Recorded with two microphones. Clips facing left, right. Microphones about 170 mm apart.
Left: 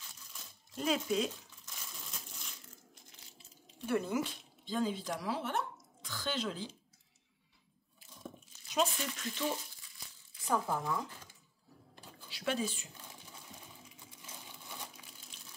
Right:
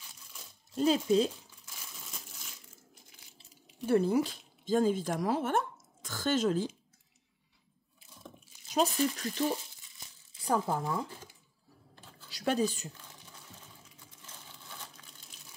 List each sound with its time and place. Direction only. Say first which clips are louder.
0.7 s speech: right 7 dB; 30° right (ahead or behind)
3.3 s speech: right 8 dB; 30° right (ahead or behind)
8.6 s speech: right 5 dB; 40° right (ahead or behind)
12.3 s speech: right 6 dB; 40° right (ahead or behind)
14.2 s a sound: left 1 dB; 15° left (ahead or behind)